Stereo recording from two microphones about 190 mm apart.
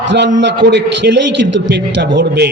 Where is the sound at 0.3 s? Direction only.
65° right (ahead or behind).